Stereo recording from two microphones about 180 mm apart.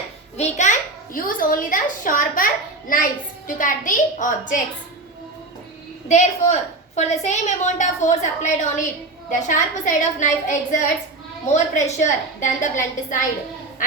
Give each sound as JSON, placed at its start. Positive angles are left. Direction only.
{"t": 0.3, "sound": "a child's voice", "side_deg": 40}
{"t": 6.1, "sound": "a woman's voice", "side_deg": 40}